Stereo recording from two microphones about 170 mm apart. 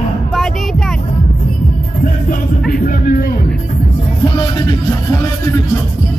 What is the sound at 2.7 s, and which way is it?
Music, 55° left (ahead or behind).